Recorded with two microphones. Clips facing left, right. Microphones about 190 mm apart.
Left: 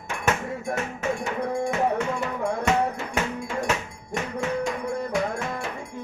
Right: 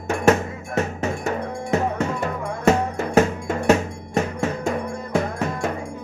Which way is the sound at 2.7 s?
45° right (ahead or behind).